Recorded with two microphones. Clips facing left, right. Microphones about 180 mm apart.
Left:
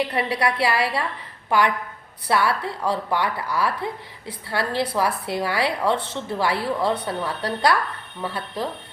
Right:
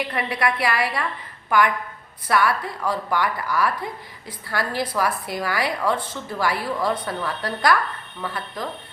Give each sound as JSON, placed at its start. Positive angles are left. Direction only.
{"t": 0.0, "sound": "a woman's voice", "side_deg": 30}